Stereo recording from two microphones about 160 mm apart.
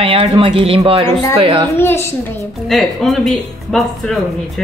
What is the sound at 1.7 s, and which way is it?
Speech, 15° left (ahead or behind).